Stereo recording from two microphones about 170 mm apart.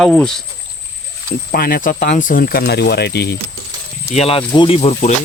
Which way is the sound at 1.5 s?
60° left (ahead or behind).